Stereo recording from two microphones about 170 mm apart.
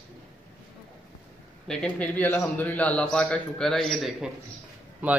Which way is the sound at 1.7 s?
5° left (ahead or behind).